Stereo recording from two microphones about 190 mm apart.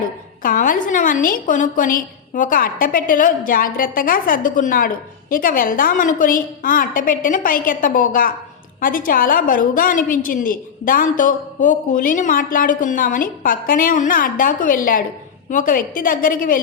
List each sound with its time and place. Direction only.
0.4 s a woman's voice: 45° left (ahead or behind)